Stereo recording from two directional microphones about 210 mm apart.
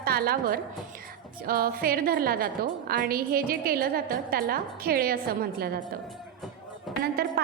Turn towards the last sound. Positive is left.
turn(degrees=-50)  # may be behind; listen again after turning